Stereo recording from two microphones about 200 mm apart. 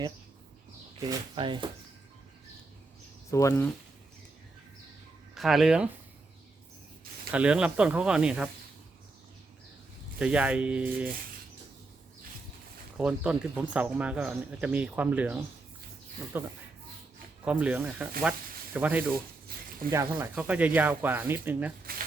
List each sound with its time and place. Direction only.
0.9 s speech: 20° right (ahead or behind)
3.2 s speech: 15° left (ahead or behind)
5.3 s speech: centre (ahead or behind)
7.3 s speech: 5° right (ahead or behind)
10.2 s speech: 5° right (ahead or behind)
13.0 s speech: 5° right (ahead or behind)
21.9 s snake: 45° right (ahead or behind)